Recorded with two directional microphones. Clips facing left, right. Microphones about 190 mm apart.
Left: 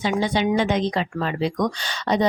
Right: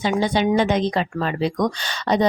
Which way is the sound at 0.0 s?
40° right (ahead or behind).